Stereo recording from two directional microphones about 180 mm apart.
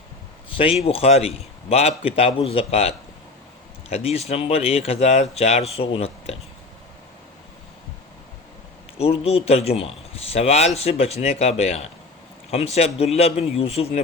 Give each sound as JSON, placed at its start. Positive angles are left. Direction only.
{"t": 0.5, "sound": "speech", "side_deg": 30}
{"t": 9.0, "sound": "speech", "side_deg": 35}